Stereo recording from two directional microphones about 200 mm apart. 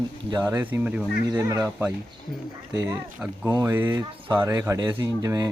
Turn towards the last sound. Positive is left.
turn(degrees=-20)  # may be behind; listen again after turning